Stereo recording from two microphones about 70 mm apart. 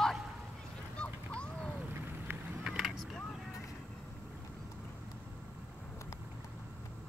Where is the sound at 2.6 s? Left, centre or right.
Centre.